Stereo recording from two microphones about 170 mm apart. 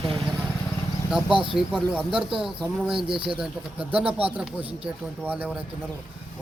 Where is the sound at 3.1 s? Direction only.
30° right (ahead or behind).